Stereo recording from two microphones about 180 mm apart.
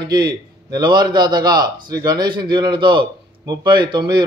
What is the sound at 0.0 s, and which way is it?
A man's voice, 25° right (ahead or behind).